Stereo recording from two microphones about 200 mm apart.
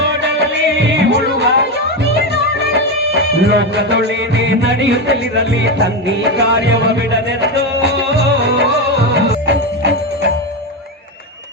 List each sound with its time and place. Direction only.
0.0 s music: 60° right (ahead or behind)
3.4 s music: 60° right (ahead or behind)
9.5 s music: 60° right (ahead or behind)